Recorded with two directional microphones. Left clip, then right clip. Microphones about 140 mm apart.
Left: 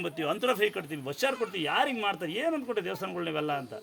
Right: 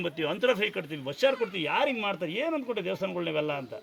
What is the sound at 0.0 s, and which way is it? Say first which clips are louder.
Speech: right 2 dB; 50° left (ahead or behind).